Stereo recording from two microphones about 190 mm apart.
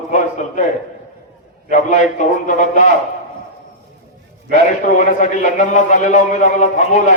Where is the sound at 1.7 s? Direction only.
40° left (ahead or behind).